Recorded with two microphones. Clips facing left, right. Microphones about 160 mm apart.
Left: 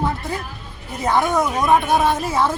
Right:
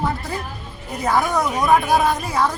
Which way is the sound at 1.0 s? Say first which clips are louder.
Left 1 dB; centre (ahead or behind).